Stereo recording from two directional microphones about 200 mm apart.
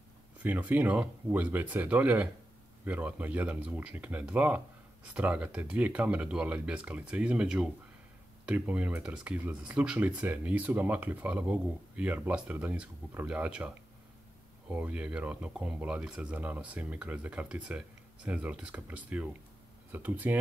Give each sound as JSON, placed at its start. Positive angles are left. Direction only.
{"t": 0.4, "sound": "speech", "side_deg": -10}